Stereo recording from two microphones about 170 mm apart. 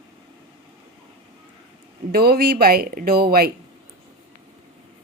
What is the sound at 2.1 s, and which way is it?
Speech, 65° right (ahead or behind).